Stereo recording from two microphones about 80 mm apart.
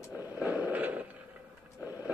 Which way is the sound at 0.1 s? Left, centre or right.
Right.